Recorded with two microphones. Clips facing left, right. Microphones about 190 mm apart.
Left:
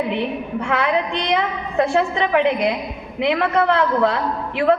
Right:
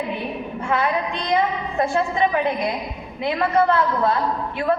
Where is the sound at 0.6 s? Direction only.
70° left (ahead or behind).